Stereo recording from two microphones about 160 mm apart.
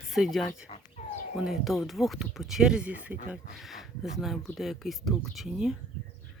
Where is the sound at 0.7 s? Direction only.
50° left (ahead or behind).